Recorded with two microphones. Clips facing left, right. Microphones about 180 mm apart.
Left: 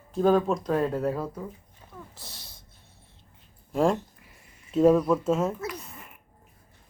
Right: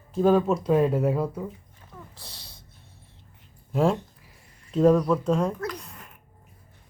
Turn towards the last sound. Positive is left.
turn(degrees=5)  # may be behind; listen again after turning